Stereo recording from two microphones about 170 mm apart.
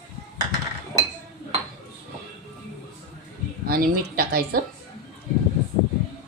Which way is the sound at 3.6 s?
60° right (ahead or behind).